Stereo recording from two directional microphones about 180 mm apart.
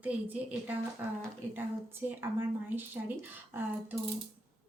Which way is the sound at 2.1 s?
10° right (ahead or behind).